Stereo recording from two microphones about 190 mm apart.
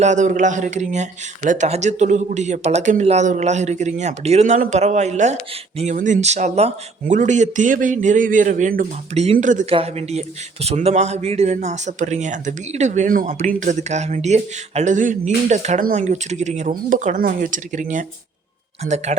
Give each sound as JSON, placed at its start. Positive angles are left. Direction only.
{"t": 0.0, "sound": "speech", "side_deg": -40}